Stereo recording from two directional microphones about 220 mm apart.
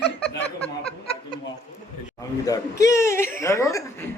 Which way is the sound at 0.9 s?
25° left (ahead or behind).